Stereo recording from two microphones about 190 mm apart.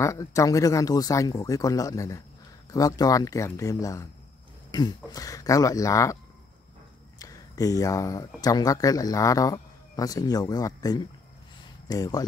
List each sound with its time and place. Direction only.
0.0 s speech: 15° left (ahead or behind)
7.2 s speech: 20° left (ahead or behind)